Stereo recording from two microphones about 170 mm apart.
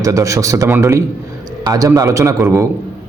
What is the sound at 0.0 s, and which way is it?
A man's voice, 20° right (ahead or behind).